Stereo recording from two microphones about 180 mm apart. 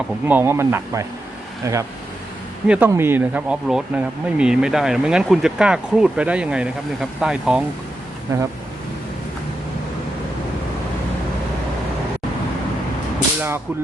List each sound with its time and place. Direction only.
0.3 s speech: 10° right (ahead or behind)
8.3 s speech: 20° right (ahead or behind)